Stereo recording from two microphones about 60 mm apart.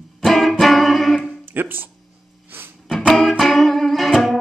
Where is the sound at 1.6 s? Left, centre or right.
Right.